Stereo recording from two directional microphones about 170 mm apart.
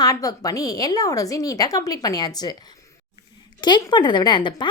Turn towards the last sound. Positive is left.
turn(degrees=30)  # may be behind; listen again after turning